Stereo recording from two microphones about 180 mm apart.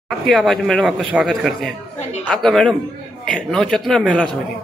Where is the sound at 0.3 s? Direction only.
Centre (ahead or behind).